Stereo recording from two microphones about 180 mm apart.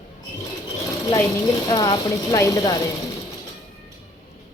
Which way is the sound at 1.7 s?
20° left (ahead or behind).